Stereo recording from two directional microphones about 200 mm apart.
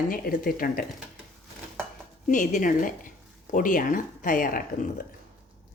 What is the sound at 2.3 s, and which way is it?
A woman's voice, 40° left (ahead or behind).